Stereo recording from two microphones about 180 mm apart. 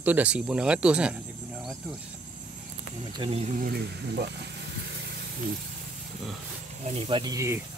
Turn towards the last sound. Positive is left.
turn(degrees=-20)  # may be behind; listen again after turning